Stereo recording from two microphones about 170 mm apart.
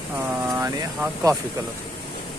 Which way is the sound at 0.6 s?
20° right (ahead or behind).